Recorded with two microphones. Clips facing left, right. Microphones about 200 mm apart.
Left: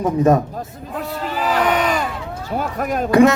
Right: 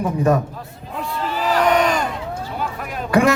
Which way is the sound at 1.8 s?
5° left (ahead or behind).